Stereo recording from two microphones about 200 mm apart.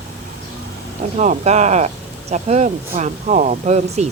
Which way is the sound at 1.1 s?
35° right (ahead or behind).